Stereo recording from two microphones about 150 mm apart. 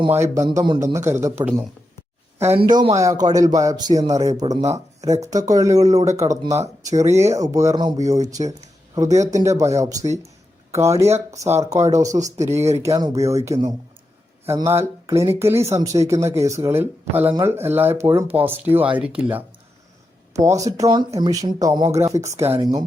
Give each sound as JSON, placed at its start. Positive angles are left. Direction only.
{"t": 0.1, "sound": "speech", "side_deg": -15}
{"t": 2.6, "sound": "speech", "side_deg": -30}
{"t": 20.3, "sound": "speech", "side_deg": -20}